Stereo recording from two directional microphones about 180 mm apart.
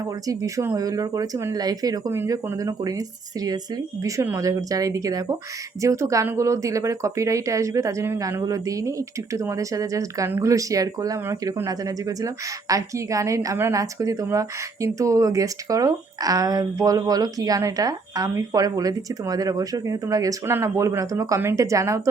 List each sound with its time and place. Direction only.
0.3 s speech: 15° right (ahead or behind)
4.0 s speech: 15° right (ahead or behind)